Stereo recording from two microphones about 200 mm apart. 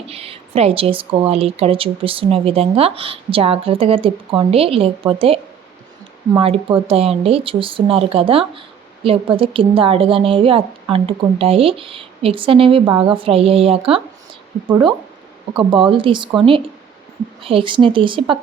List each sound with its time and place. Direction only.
0.1 s speech: 30° right (ahead or behind)
6.4 s speech: 25° right (ahead or behind)
17.4 s speech: 25° right (ahead or behind)